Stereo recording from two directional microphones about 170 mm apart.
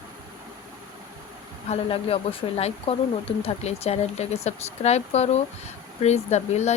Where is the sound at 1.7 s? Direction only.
35° left (ahead or behind).